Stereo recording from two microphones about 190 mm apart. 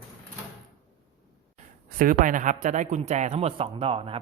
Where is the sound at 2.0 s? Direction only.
45° right (ahead or behind); by 4.2 s 30° right (ahead or behind).